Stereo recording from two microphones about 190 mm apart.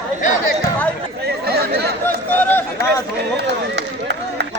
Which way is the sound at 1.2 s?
55° right (ahead or behind).